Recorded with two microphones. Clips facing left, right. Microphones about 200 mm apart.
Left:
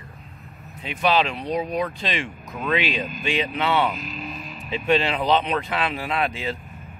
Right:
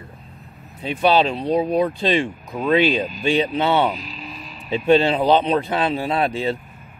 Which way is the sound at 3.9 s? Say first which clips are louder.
Left 1 dB; 50° left (ahead or behind).